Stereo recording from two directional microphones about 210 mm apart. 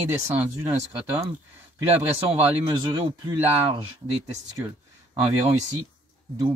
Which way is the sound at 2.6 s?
20° right (ahead or behind).